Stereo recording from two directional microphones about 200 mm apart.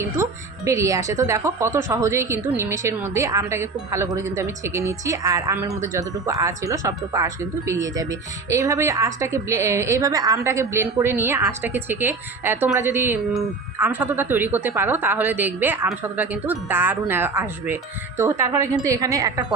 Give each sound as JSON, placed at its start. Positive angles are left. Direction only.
{"t": 0.0, "sound": "a woman's voice", "side_deg": -15}